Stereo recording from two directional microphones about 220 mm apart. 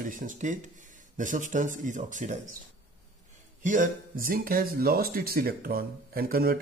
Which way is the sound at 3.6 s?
35° right (ahead or behind).